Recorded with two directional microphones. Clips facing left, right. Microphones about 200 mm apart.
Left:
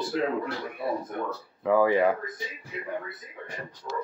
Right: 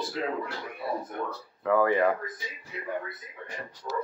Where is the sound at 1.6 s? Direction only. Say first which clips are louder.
Left 2 dB; 20° left (ahead or behind).